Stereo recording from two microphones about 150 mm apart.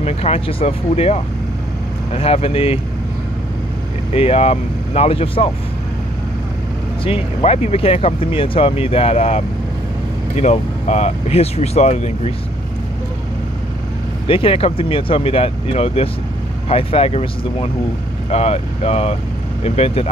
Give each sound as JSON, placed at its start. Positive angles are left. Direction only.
{"t": 0.0, "sound": "speech", "side_deg": 40}
{"t": 4.1, "sound": "speech", "side_deg": 40}
{"t": 7.1, "sound": "speech", "side_deg": 40}
{"t": 14.2, "sound": "speech", "side_deg": 35}